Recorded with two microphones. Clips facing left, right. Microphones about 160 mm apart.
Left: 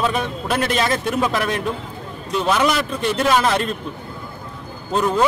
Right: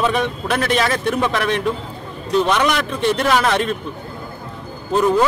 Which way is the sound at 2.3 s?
5° left (ahead or behind).